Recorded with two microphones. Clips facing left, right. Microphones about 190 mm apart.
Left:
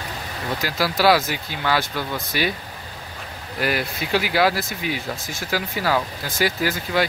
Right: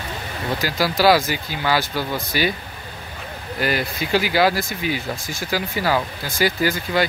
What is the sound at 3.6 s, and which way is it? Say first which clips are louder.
Speech: right 1 dB; centre (ahead or behind).